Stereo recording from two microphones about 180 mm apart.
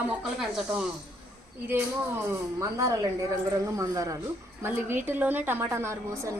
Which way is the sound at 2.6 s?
20° right (ahead or behind).